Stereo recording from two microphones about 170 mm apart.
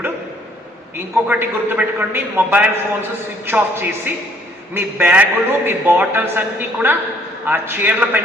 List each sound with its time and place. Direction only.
1.3 s a man's voice: 10° right (ahead or behind)